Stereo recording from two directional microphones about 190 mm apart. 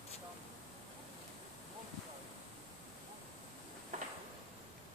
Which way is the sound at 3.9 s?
40° right (ahead or behind).